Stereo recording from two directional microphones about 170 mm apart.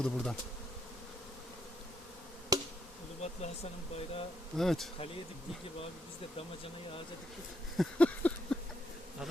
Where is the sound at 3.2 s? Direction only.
40° left (ahead or behind).